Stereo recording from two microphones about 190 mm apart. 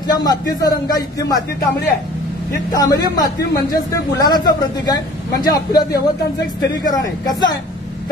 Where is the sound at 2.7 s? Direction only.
20° left (ahead or behind).